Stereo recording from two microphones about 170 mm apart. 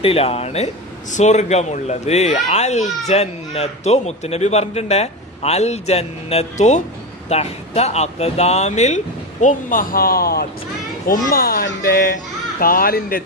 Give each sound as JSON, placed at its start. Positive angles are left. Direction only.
{"t": 0.0, "sound": "speech", "side_deg": 35}